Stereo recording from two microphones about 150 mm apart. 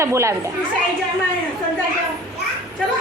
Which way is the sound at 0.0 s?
20° right (ahead or behind).